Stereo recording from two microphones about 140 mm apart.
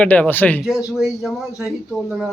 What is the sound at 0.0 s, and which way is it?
Speech, 10° left (ahead or behind).